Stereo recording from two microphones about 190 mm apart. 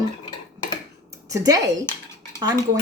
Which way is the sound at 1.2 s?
20° right (ahead or behind).